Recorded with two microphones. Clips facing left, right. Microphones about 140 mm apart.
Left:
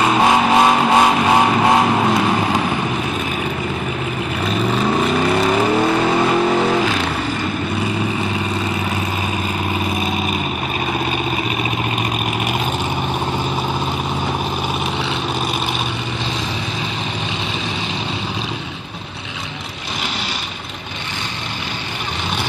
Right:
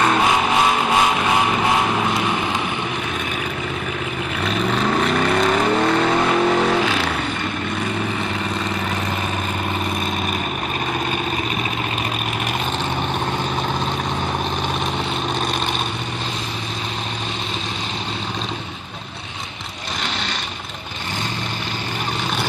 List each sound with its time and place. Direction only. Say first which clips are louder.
0.2 s vehicle: left 4 dB; 35° left (ahead or behind)
4.4 s vehicle: left 2 dB; 5° left (ahead or behind)